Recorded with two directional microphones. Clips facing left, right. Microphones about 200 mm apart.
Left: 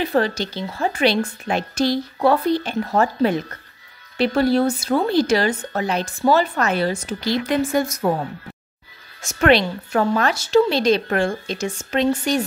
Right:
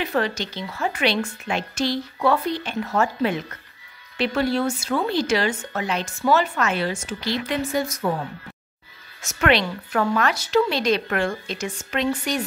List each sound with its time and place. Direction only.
0.0 s speech: 35° left (ahead or behind)
9.2 s a woman's voice: 30° left (ahead or behind)